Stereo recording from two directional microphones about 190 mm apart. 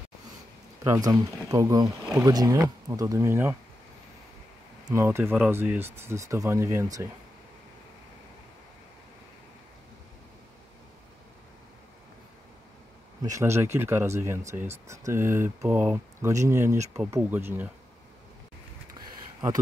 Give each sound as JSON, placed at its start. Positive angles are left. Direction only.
{"t": 0.8, "sound": "speech", "side_deg": -20}
{"t": 4.8, "sound": "speech", "side_deg": -15}
{"t": 13.2, "sound": "speech", "side_deg": -15}
{"t": 18.9, "sound": "a sound", "side_deg": -20}